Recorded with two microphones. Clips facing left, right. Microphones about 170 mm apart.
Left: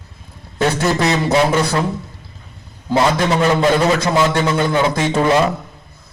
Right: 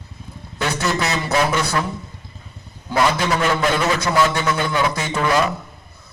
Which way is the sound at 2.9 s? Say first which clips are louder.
Left 3 dB; 25° left (ahead or behind).